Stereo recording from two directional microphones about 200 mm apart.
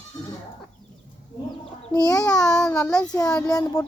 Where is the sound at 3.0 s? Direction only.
20° left (ahead or behind).